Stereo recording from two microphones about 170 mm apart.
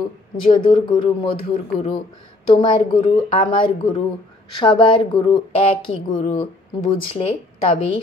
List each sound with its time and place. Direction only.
0.7 s a woman's voice: 25° left (ahead or behind)